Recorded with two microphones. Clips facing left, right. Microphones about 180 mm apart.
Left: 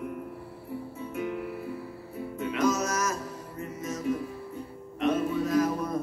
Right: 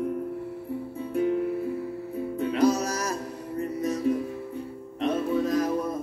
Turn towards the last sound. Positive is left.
turn(degrees=-35)  # may be behind; listen again after turning